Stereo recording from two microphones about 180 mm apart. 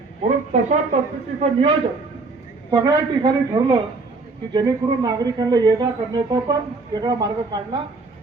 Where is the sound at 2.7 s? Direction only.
20° right (ahead or behind).